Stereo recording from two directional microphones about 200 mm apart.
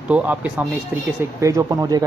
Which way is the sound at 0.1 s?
10° right (ahead or behind).